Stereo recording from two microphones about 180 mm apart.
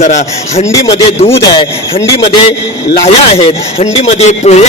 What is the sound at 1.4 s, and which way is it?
Speech, 25° left (ahead or behind).